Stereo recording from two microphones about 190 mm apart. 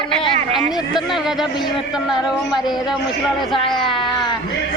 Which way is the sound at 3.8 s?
25° left (ahead or behind).